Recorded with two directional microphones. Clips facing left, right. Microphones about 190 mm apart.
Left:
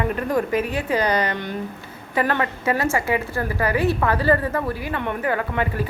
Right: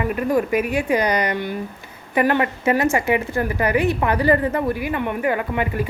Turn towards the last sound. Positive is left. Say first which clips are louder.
# right 2 dB
turn(degrees=-15)  # may be behind; listen again after turning